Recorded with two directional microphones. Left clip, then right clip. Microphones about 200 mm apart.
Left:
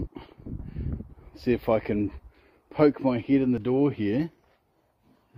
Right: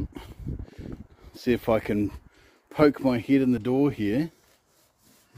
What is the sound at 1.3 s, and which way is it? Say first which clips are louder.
Speech: even; 15° right (ahead or behind).